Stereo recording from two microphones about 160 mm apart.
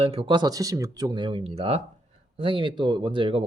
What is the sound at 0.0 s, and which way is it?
Speech, 35° right (ahead or behind).